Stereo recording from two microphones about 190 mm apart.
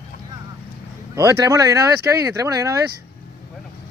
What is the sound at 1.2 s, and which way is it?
Speech, 15° right (ahead or behind).